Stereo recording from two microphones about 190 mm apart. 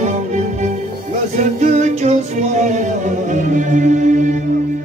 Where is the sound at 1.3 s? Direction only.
40° right (ahead or behind).